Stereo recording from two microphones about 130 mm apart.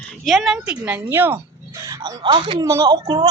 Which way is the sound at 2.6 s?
25° right (ahead or behind).